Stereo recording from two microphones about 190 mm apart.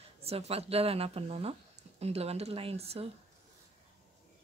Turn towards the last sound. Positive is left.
turn(degrees=-30)  # may be behind; listen again after turning